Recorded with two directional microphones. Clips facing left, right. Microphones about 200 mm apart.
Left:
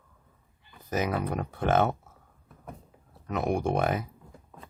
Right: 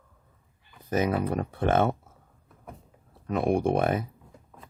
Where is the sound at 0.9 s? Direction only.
25° right (ahead or behind).